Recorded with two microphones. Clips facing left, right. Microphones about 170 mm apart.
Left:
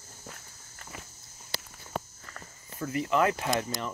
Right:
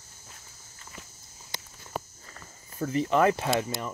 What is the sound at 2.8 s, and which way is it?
Speech, 25° right (ahead or behind).